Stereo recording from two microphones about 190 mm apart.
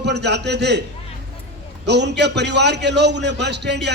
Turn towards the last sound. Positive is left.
turn(degrees=-65)  # may be behind; listen again after turning